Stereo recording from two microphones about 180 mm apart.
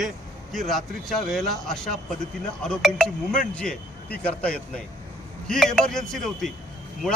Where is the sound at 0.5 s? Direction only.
Centre (ahead or behind).